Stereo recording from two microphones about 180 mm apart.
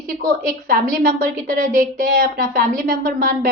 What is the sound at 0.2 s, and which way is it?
A woman's voice, 50° right (ahead or behind).